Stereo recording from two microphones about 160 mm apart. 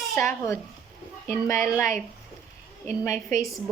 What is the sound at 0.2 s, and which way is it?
A woman's voice, 15° left (ahead or behind).